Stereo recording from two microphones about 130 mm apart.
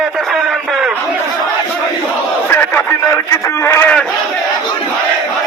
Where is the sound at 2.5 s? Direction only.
10° left (ahead or behind).